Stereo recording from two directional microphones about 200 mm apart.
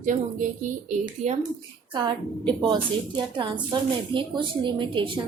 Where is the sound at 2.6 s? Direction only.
20° right (ahead or behind).